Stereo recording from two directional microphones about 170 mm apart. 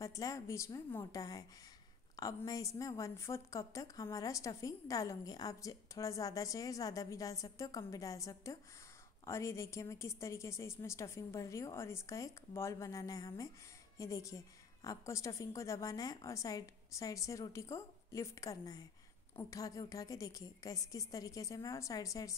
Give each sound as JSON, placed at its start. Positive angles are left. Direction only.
{"t": 0.0, "sound": "a woman's voice", "side_deg": 20}